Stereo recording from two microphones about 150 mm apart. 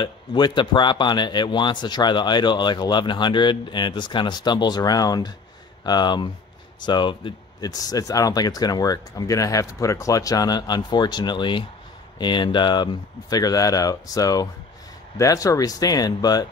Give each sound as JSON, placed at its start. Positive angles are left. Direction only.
{"t": 0.0, "sound": "speech", "side_deg": 30}